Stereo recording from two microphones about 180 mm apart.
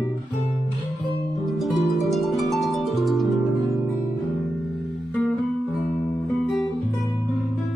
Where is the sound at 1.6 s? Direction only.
Centre (ahead or behind).